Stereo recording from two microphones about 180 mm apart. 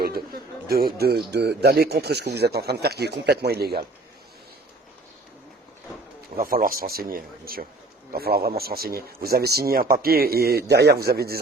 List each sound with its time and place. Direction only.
0.7 s speech: 60° right (ahead or behind)
6.3 s speech: 55° right (ahead or behind)